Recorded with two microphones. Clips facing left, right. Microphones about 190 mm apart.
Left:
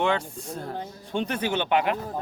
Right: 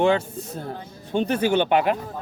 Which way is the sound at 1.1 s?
35° right (ahead or behind).